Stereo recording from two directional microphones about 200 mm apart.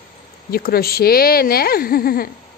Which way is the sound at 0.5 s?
50° left (ahead or behind).